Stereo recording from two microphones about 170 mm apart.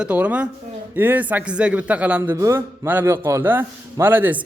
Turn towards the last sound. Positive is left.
turn(degrees=-10)  # may be behind; listen again after turning